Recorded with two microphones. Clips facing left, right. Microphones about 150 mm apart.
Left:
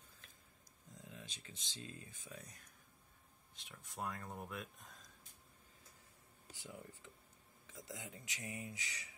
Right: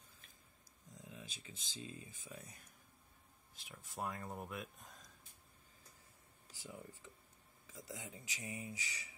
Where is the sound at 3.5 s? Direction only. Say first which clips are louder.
Right 2 dB; 5° right (ahead or behind).